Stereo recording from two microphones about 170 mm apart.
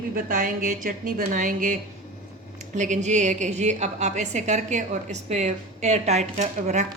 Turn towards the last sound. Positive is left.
turn(degrees=-45)  # may be behind; listen again after turning